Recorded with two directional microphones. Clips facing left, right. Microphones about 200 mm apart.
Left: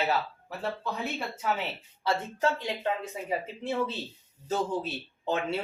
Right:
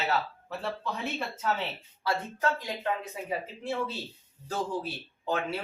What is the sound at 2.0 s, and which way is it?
Speech, 25° left (ahead or behind).